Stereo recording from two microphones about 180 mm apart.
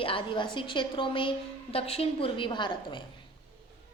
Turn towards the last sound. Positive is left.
turn(degrees=25)  # may be behind; listen again after turning